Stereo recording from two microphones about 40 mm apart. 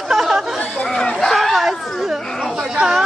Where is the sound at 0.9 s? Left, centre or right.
Centre.